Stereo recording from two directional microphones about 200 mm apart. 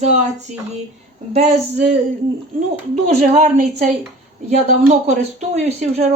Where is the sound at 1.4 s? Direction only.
35° right (ahead or behind).